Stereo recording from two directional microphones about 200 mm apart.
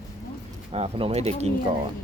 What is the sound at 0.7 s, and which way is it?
Speech, 30° right (ahead or behind).